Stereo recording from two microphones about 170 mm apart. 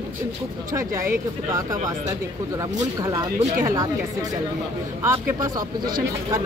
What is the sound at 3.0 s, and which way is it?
Speech, 20° right (ahead or behind).